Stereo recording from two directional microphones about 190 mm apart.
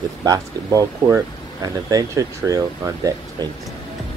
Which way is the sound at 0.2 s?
20° right (ahead or behind).